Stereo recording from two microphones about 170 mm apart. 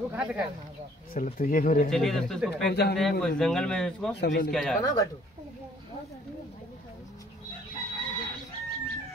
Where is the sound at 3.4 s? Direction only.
5° left (ahead or behind).